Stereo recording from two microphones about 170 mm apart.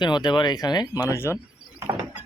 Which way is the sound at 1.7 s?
20° right (ahead or behind).